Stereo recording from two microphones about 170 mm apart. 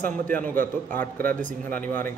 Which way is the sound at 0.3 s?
10° left (ahead or behind).